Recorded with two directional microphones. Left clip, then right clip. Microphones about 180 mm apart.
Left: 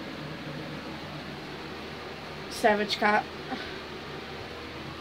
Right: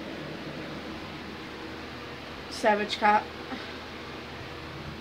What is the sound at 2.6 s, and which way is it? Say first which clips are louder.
Speech: even; 25° left (ahead or behind).